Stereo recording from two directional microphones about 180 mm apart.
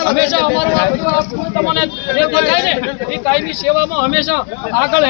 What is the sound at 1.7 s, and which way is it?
A man's voice, 10° left (ahead or behind).